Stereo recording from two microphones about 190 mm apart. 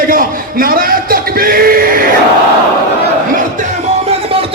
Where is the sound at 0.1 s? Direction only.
50° right (ahead or behind).